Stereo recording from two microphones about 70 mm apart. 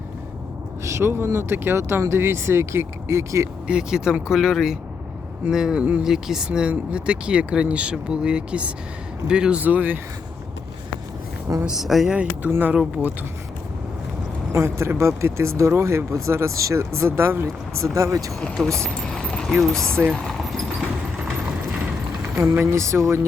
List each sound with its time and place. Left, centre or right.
0.9 s speech: right
3.7 s speech: centre; by 10.0 s right
11.6 s speech: centre
12.1 s speech: centre
12.5 s speech: right
14.5 s speech: right
17.1 s speech: right
17.9 s speech: right
18.5 s speech: centre
20.2 s a sound: centre
22.6 s speech: right